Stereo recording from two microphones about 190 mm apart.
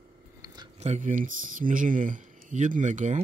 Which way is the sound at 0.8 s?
40° right (ahead or behind).